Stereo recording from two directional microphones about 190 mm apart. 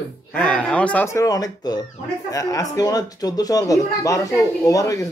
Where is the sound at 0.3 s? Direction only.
10° left (ahead or behind).